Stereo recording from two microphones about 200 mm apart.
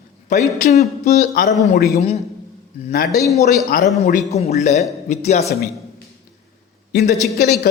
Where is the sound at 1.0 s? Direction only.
50° left (ahead or behind).